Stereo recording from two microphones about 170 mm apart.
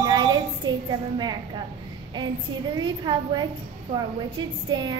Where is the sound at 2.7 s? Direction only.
25° right (ahead or behind).